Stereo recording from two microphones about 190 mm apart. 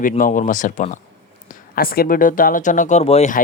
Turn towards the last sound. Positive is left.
turn(degrees=35)  # may be behind; listen again after turning